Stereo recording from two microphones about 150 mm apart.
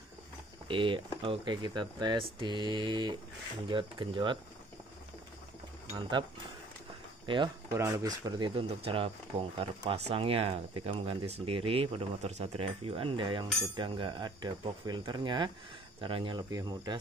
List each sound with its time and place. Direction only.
0.7 s speech: 35° right (ahead or behind)
5.9 s speech: 30° right (ahead or behind)
7.7 s speech: 20° right (ahead or behind)